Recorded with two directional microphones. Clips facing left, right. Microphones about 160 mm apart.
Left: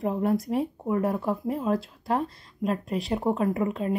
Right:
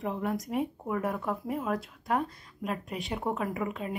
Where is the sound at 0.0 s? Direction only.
40° left (ahead or behind).